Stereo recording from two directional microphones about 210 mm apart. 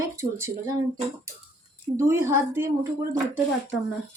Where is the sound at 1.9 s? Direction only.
10° right (ahead or behind).